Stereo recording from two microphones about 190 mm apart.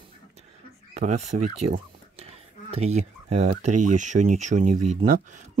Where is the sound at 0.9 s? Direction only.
40° right (ahead or behind).